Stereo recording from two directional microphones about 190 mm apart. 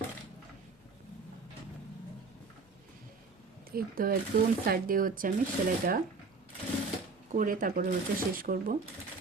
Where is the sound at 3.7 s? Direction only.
50° right (ahead or behind).